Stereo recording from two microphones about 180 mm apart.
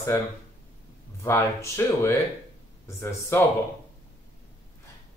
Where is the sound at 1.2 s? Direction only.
15° left (ahead or behind).